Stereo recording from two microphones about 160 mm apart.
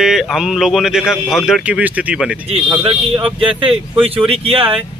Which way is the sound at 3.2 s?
35° right (ahead or behind).